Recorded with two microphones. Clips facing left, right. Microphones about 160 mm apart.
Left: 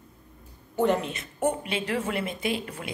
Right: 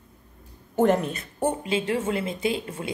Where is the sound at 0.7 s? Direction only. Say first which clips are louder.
Right 3 dB; 45° right (ahead or behind).